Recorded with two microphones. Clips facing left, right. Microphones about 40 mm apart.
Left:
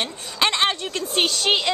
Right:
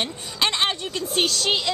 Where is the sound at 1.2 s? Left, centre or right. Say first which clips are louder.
Left 1 dB; centre.